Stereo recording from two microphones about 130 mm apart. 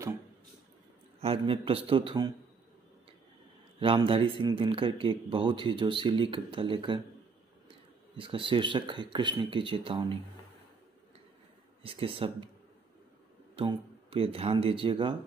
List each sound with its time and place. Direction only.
1.4 s speech: 45° right (ahead or behind)
3.8 s speech: 40° right (ahead or behind)
8.2 s speech: 40° right (ahead or behind)
11.8 s speech: 45° right (ahead or behind)
13.6 s speech: 45° right (ahead or behind)